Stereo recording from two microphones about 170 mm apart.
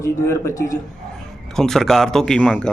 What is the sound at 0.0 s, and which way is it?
Speech, 15° left (ahead or behind).